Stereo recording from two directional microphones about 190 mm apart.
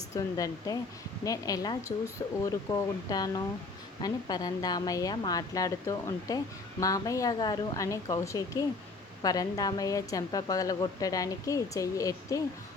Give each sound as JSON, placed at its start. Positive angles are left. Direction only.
{"t": 0.1, "sound": "a woman's voice", "side_deg": 20}